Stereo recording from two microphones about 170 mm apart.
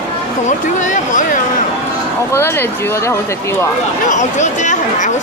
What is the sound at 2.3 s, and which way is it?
Speech, 15° left (ahead or behind).